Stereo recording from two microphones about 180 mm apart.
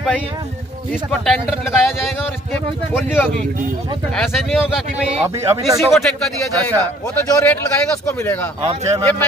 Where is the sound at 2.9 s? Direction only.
10° left (ahead or behind).